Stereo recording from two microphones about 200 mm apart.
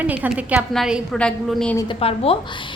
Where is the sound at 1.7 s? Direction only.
25° left (ahead or behind).